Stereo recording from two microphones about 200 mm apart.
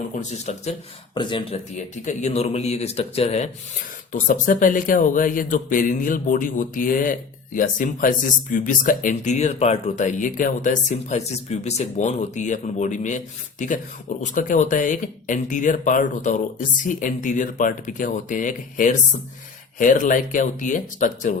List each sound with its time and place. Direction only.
0.2 s speech: 35° left (ahead or behind)